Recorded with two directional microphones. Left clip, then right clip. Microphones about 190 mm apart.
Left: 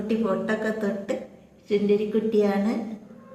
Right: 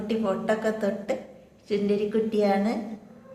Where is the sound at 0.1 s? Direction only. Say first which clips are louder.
Even; 10° right (ahead or behind).